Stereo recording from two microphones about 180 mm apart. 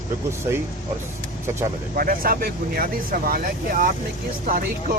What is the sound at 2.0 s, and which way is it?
Speech, 55° right (ahead or behind).